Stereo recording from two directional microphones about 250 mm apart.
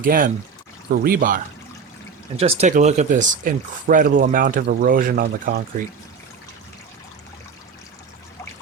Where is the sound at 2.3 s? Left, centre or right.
Right.